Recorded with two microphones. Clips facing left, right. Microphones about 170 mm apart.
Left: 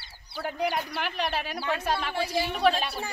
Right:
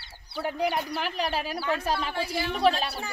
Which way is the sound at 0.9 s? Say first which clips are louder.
Right 1 dB; 35° right (ahead or behind).